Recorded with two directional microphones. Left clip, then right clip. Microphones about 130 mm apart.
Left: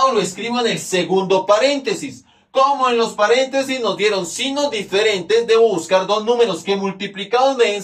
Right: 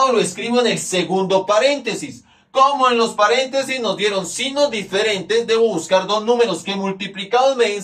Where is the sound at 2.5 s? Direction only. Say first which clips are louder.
Right 1 dB; 10° left (ahead or behind).